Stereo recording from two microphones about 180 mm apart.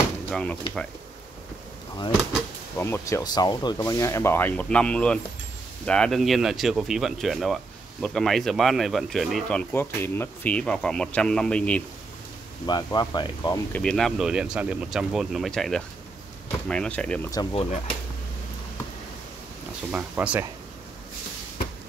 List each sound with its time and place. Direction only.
0.3 s speech: 5° left (ahead or behind)
2.8 s speech: 15° left (ahead or behind)
12.6 s speech: 25° left (ahead or behind)
13.7 s speech: 5° left (ahead or behind)
17.3 s speech: 25° left (ahead or behind)
19.9 s speech: 10° right (ahead or behind)